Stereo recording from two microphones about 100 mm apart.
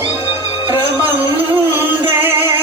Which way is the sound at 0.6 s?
40° left (ahead or behind).